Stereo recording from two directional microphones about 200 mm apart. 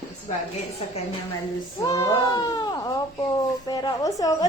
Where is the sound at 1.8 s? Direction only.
20° left (ahead or behind).